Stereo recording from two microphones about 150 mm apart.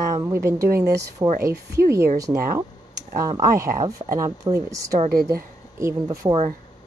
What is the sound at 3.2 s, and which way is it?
Speech, 20° right (ahead or behind).